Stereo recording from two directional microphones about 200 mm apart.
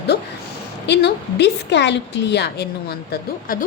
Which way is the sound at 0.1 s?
55° left (ahead or behind).